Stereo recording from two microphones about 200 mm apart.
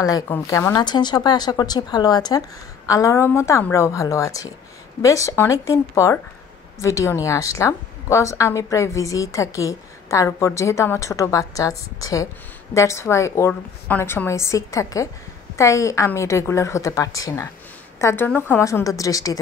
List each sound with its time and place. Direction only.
0.0 s a woman's voice: 15° left (ahead or behind)